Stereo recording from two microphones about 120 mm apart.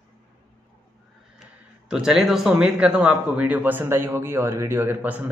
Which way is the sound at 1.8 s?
5° right (ahead or behind).